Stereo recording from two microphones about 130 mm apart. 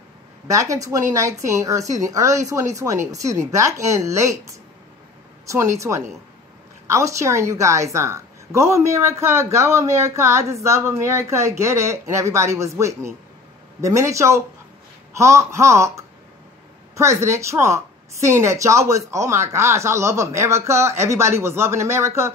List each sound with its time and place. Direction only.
0.5 s a woman's voice: 25° right (ahead or behind)
16.9 s a woman's voice: 20° right (ahead or behind)